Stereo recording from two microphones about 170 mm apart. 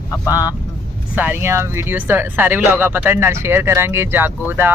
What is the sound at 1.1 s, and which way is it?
Speech, 10° right (ahead or behind).